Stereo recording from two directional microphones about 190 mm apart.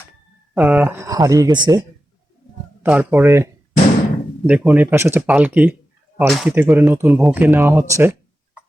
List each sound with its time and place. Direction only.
0.5 s speech: 5° right (ahead or behind); by 1.8 s 20° right (ahead or behind)
2.8 s speech: 10° right (ahead or behind)